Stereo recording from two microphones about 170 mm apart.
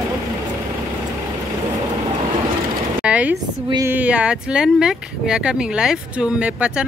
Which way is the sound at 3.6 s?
20° right (ahead or behind).